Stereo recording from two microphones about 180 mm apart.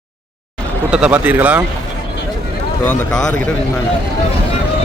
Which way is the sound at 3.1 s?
5° left (ahead or behind).